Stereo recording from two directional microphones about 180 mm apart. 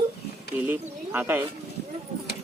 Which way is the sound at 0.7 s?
10° right (ahead or behind).